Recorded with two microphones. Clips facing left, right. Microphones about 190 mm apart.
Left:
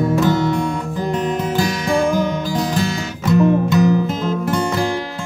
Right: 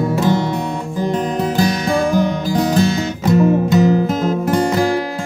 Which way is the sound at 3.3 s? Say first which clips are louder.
Right 1 dB; 40° right (ahead or behind).